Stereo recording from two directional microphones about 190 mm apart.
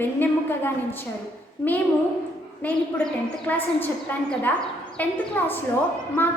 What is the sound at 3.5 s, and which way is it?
Speech, 10° left (ahead or behind).